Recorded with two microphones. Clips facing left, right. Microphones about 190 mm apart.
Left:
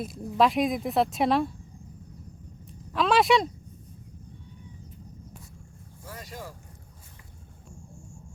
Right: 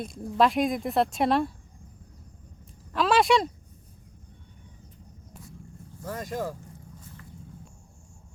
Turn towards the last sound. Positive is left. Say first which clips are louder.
# right 9 dB
turn(degrees=-50)  # may be behind; listen again after turning